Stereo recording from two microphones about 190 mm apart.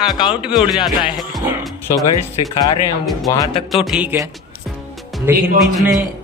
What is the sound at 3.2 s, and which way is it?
Music, 20° left (ahead or behind).